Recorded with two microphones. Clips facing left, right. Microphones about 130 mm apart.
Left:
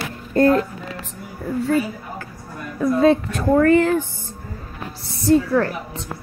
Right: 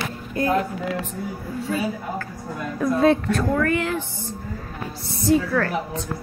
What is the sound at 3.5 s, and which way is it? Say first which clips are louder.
Speech: left 7 dB; 35° left (ahead or behind).